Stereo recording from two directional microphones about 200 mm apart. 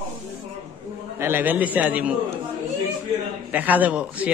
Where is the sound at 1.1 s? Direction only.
10° right (ahead or behind).